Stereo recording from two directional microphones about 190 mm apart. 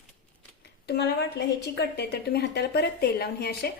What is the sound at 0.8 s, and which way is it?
A woman's voice, 60° left (ahead or behind).